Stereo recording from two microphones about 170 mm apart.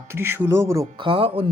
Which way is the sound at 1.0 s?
30° right (ahead or behind).